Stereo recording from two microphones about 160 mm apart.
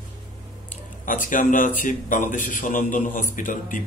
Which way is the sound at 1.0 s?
55° left (ahead or behind).